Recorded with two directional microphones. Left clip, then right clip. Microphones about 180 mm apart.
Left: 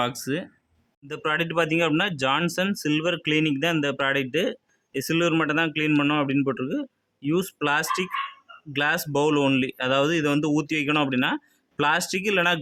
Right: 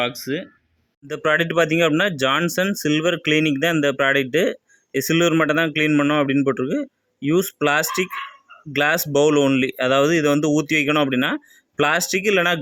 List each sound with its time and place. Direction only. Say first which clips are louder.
0.0 s speech: right 3 dB; 20° left (ahead or behind)
1.0 s speech: right 6 dB; 20° right (ahead or behind)